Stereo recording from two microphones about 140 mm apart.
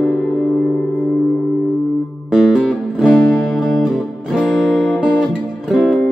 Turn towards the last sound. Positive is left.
turn(degrees=0)  # may be behind; listen again after turning